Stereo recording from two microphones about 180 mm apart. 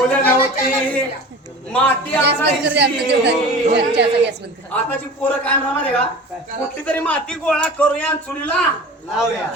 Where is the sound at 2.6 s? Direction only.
70° right (ahead or behind).